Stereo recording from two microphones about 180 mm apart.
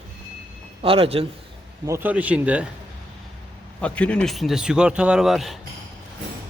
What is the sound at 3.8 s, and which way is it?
A man's voice, 5° left (ahead or behind).